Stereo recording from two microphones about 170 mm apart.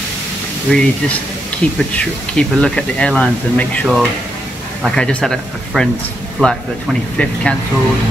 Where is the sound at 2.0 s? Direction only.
5° left (ahead or behind).